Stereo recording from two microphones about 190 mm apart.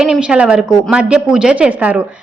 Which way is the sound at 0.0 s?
5° right (ahead or behind).